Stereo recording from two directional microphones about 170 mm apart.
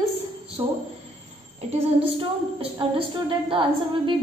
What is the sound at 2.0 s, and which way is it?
A woman's voice, 35° right (ahead or behind).